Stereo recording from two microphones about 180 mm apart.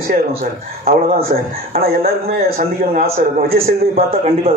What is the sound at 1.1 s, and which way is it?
Speech, 55° right (ahead or behind).